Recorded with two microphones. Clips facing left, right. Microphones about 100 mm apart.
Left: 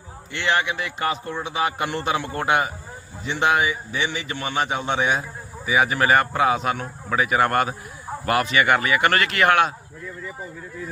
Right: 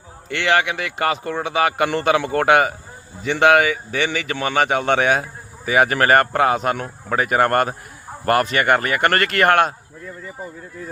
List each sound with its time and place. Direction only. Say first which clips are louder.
0.3 s a man's voice: right 4 dB; 75° right (ahead or behind); by 9.7 s 50° right (ahead or behind)